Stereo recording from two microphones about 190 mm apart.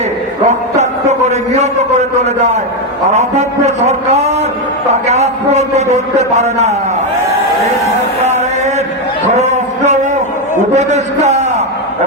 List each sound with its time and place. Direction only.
0.4 s a man's voice: 35° right (ahead or behind)
8.2 s a sound: 35° right (ahead or behind)
10.8 s a man's voice: 35° right (ahead or behind)